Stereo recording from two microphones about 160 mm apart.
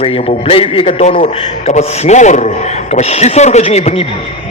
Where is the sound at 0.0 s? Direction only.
35° left (ahead or behind).